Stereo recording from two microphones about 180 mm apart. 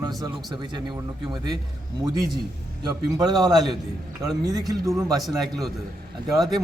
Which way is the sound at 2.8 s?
20° right (ahead or behind).